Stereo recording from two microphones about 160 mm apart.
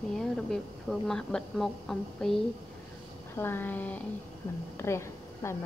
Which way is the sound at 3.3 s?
15° left (ahead or behind).